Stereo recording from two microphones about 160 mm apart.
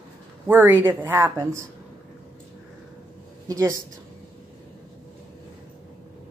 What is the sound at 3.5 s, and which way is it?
Speech, 20° right (ahead or behind).